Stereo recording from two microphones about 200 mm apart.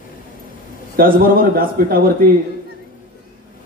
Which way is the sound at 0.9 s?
45° right (ahead or behind).